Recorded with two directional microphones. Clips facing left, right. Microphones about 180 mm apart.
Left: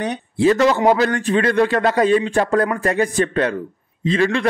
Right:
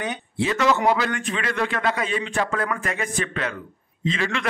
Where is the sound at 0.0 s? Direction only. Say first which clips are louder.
Left 9 dB; 35° left (ahead or behind).